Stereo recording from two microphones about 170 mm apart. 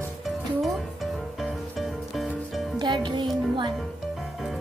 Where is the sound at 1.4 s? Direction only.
Centre (ahead or behind).